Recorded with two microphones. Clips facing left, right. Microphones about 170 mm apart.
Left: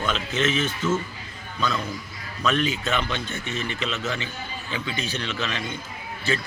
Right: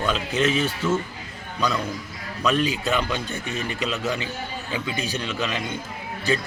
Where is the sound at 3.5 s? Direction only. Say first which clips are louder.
Even; 40° right (ahead or behind).